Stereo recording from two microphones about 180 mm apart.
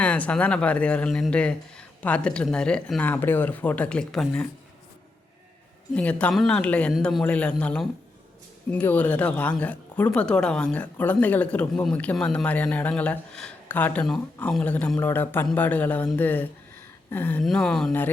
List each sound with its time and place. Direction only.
0.0 s a woman's voice: 5° left (ahead or behind)
5.9 s a man's voice: 5° left (ahead or behind)